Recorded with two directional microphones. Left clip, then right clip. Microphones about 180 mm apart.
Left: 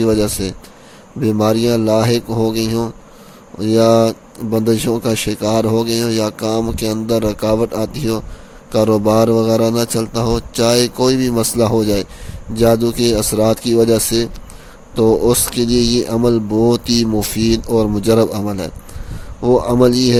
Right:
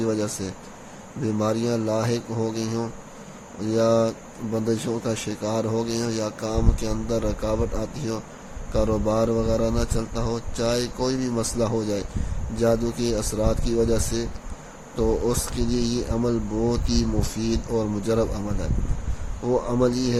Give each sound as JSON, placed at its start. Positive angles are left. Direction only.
{"t": 0.0, "sound": "speech", "side_deg": 45}